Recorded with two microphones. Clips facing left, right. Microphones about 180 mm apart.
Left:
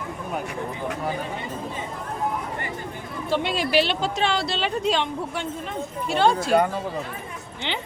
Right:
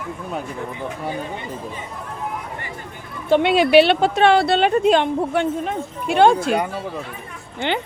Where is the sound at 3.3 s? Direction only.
60° right (ahead or behind).